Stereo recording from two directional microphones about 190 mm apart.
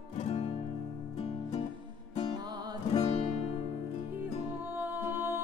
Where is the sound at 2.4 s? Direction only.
20° right (ahead or behind).